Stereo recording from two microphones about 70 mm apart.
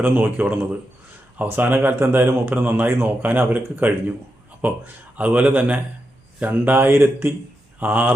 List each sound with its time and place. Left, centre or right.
0.0 s speech: right